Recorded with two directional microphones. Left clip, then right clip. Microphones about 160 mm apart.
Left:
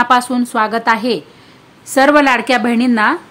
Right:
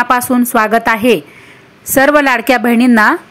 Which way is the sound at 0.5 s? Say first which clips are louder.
Right 3 dB; 20° right (ahead or behind).